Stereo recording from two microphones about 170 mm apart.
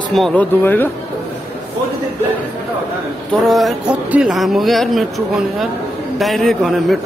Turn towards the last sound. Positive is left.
turn(degrees=0)  # may be behind; listen again after turning